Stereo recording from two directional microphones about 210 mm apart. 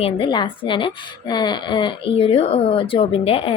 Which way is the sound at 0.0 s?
25° left (ahead or behind).